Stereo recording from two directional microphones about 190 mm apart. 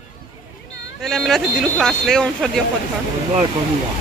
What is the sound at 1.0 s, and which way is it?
Speech, centre (ahead or behind).